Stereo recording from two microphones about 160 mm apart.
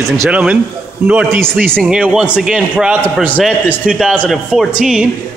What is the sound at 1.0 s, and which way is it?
A man's voice, 10° right (ahead or behind).